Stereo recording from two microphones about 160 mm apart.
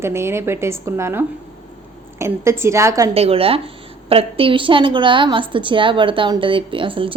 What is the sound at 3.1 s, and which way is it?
A woman's voice, 40° right (ahead or behind).